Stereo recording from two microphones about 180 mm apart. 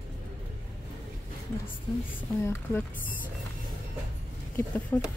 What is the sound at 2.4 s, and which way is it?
Speech, 15° left (ahead or behind).